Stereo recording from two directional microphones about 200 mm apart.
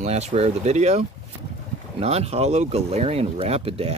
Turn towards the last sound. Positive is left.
turn(degrees=-30)  # may be behind; listen again after turning